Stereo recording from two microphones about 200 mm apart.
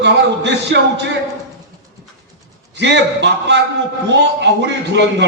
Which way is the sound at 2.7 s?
60° right (ahead or behind).